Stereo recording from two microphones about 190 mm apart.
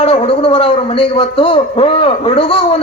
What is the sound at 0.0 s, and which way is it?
A man's voice, 30° left (ahead or behind).